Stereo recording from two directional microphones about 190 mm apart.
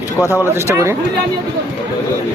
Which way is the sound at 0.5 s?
15° right (ahead or behind).